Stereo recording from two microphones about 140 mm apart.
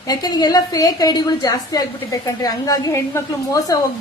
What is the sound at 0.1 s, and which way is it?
A woman's voice, 30° left (ahead or behind).